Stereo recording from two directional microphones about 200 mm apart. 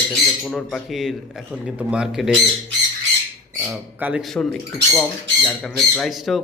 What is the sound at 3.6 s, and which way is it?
A man's voice, 5° right (ahead or behind).